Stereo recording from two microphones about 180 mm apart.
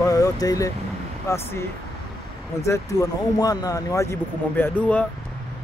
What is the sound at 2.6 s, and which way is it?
Speech, 15° left (ahead or behind).